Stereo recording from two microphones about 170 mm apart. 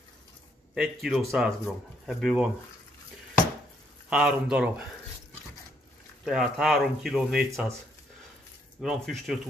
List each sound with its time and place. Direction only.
0.7 s speech: 5° right (ahead or behind)
4.1 s speech: 5° right (ahead or behind)
6.2 s speech: centre (ahead or behind)
8.8 s speech: centre (ahead or behind)